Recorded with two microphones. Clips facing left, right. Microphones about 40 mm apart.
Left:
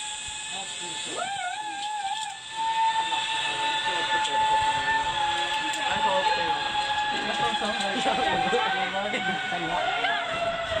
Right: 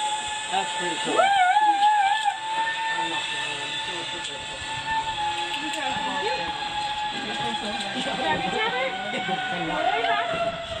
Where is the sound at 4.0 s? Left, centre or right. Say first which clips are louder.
Left 7 dB; left.